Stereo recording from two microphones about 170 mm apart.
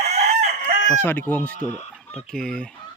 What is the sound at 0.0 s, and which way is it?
Chicken, 40° right (ahead or behind).